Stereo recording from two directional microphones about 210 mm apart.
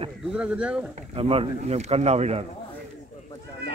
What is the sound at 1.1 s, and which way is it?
Speech, 25° right (ahead or behind).